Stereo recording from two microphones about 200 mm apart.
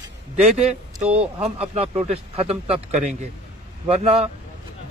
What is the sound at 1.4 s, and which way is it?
Speech, 30° right (ahead or behind).